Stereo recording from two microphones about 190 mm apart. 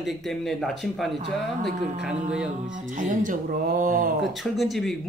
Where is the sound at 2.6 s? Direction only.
40° right (ahead or behind).